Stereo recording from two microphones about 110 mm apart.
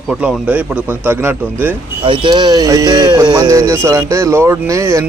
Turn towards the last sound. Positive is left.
turn(degrees=-25)  # may be behind; listen again after turning